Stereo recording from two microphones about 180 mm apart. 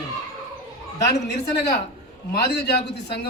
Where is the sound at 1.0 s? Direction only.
65° left (ahead or behind).